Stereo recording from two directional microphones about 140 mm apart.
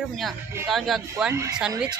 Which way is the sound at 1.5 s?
5° right (ahead or behind).